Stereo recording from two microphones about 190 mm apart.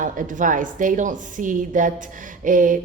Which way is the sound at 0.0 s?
45° right (ahead or behind).